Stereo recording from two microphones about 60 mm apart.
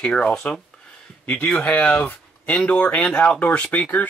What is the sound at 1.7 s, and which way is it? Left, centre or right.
Speech, left.